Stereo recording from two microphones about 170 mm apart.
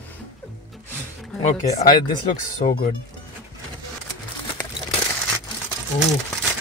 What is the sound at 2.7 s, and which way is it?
Speech, 55° left (ahead or behind).